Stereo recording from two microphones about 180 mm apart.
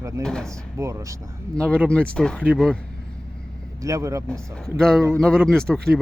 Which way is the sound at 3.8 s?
15° right (ahead or behind).